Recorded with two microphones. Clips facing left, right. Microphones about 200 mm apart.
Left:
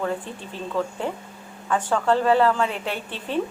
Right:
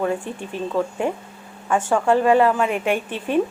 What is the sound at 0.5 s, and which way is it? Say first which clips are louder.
A woman's voice: right 4 dB; 15° right (ahead or behind).